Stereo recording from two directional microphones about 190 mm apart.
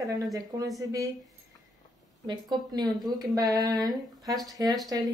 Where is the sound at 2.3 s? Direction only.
20° right (ahead or behind).